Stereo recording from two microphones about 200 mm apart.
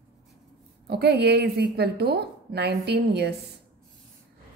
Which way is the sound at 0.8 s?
55° right (ahead or behind).